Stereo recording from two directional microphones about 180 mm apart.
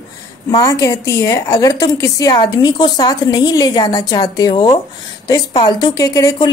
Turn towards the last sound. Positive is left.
turn(degrees=20)  # may be behind; listen again after turning